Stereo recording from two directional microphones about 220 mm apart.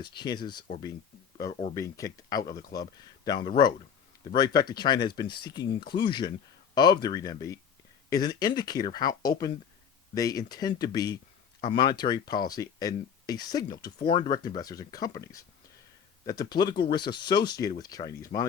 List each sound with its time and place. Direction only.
0.0 s speech: 20° left (ahead or behind)